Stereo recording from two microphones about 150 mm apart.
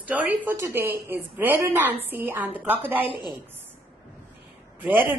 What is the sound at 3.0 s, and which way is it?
Speech, 35° left (ahead or behind).